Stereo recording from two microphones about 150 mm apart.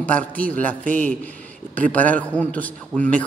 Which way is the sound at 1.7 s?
10° left (ahead or behind).